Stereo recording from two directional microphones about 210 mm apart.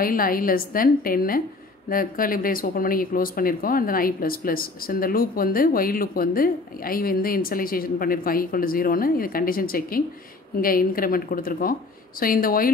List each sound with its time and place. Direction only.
0.0 s speech: 45° left (ahead or behind)